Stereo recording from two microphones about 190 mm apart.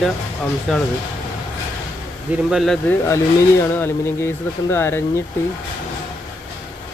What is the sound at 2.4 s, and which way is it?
Speech, centre (ahead or behind).